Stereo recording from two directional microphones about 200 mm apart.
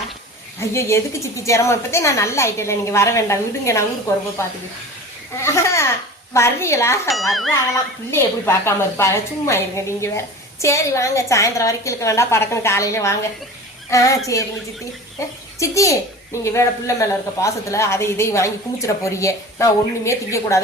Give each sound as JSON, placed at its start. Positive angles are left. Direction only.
{"t": 0.6, "sound": "a woman's voice", "side_deg": 15}
{"t": 7.1, "sound": "speech", "side_deg": 0}
{"t": 8.1, "sound": "a woman's voice", "side_deg": 10}
{"t": 15.5, "sound": "a child's voice", "side_deg": 15}